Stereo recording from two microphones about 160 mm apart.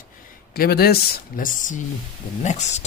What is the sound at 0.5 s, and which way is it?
Speech, 70° left (ahead or behind).